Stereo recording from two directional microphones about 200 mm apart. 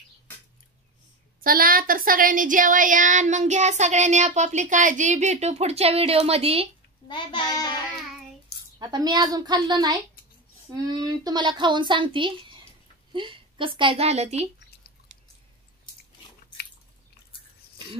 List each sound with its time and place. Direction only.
1.4 s speech: 45° right (ahead or behind); by 6.7 s 30° right (ahead or behind)
7.1 s a child's voice: 20° left (ahead or behind)
8.7 s a woman's voice: 20° right (ahead or behind)